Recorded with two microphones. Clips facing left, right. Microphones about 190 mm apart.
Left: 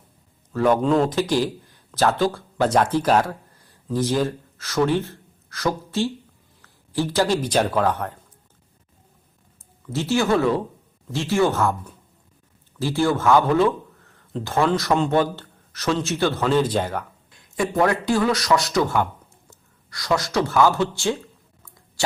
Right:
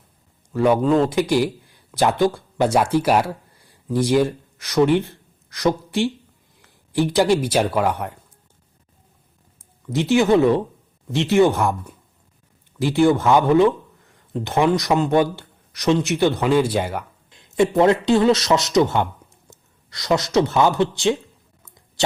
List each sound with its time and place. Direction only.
0.5 s a man's voice: 15° right (ahead or behind)
0.8 s speech: 5° right (ahead or behind)
9.8 s a man's voice: 15° right (ahead or behind)
17.3 s a man's voice: 25° right (ahead or behind)
21.6 s a sound: 20° right (ahead or behind)